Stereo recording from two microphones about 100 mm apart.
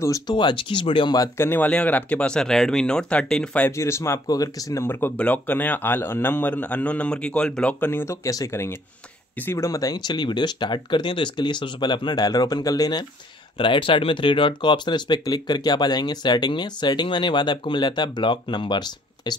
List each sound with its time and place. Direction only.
0.3 s speech: 50° left (ahead or behind)
1.4 s speech: 20° left (ahead or behind)
3.7 s speech: 30° left (ahead or behind)
4.8 s speech: 20° left (ahead or behind)
7.8 s speech: 25° left (ahead or behind)
9.7 s speech: 35° left (ahead or behind)
13.6 s speech: 55° left (ahead or behind)